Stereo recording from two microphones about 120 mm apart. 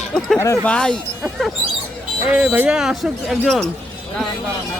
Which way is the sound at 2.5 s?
5° right (ahead or behind).